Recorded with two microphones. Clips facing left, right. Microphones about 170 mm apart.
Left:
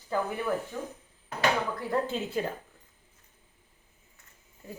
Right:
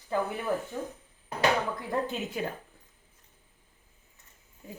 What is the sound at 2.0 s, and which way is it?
Speech, 15° right (ahead or behind).